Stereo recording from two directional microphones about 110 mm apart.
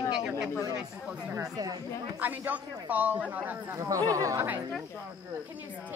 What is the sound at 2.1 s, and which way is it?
Speech, 15° right (ahead or behind).